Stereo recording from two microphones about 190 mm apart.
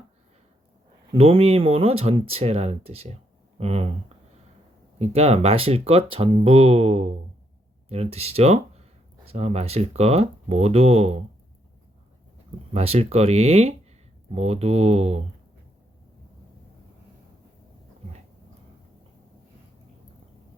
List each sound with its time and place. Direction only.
1.1 s speech: 30° right (ahead or behind)
4.9 s speech: 35° right (ahead or behind)
12.7 s speech: 35° right (ahead or behind)